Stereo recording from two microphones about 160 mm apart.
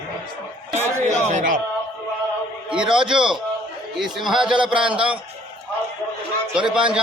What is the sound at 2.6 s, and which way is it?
A man's voice, 5° right (ahead or behind).